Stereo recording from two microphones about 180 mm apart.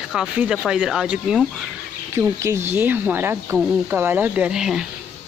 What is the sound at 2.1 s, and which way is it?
Speech, 15° right (ahead or behind).